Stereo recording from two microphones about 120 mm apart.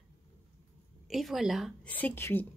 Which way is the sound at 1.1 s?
Centre (ahead or behind).